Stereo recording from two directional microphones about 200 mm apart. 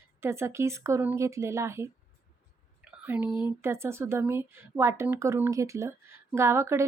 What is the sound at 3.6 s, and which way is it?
Speech, 15° right (ahead or behind).